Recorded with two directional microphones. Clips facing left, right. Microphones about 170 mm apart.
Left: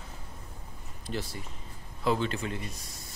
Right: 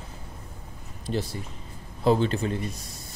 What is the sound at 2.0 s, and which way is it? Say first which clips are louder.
Speech: right 6 dB; 35° right (ahead or behind).